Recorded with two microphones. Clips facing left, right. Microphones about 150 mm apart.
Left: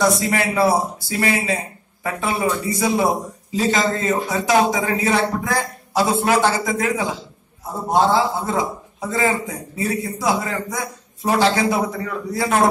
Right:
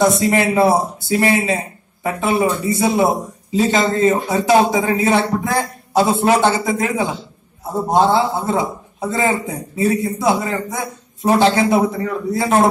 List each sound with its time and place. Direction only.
0.0 s a man's voice: 25° right (ahead or behind)